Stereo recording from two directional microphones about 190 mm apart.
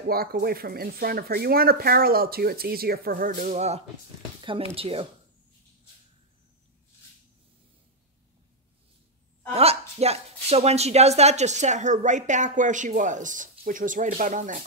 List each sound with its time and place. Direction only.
0.1 s speech: 55° right (ahead or behind); by 3.8 s 35° right (ahead or behind)
4.4 s a sound: 25° right (ahead or behind)
4.7 s speech: 30° right (ahead or behind)
9.5 s speech: 35° right (ahead or behind)